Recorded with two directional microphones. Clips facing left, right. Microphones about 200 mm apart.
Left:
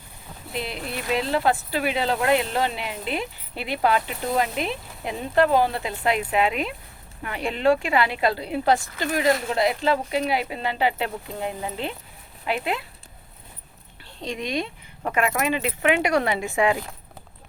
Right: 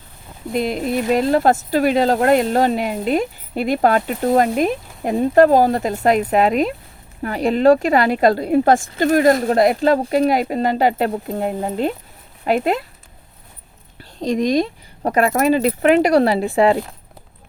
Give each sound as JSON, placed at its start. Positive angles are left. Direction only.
{"t": 0.5, "sound": "speech", "side_deg": -45}
{"t": 14.0, "sound": "speech", "side_deg": -40}